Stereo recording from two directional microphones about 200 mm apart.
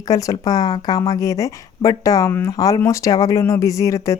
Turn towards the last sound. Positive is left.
turn(degrees=15)  # may be behind; listen again after turning